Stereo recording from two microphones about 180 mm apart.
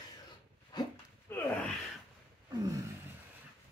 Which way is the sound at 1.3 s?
15° left (ahead or behind).